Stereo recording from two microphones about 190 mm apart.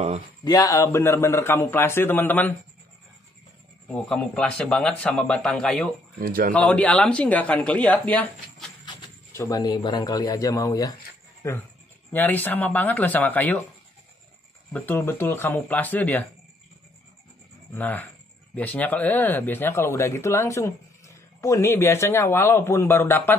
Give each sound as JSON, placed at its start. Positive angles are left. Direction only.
{"t": 0.4, "sound": "speech", "side_deg": 20}
{"t": 3.9, "sound": "speech", "side_deg": 5}
{"t": 6.1, "sound": "speech", "side_deg": -50}
{"t": 6.5, "sound": "speech", "side_deg": 5}
{"t": 8.8, "sound": "speech", "side_deg": 15}
{"t": 14.7, "sound": "speech", "side_deg": 10}
{"t": 17.7, "sound": "speech", "side_deg": 10}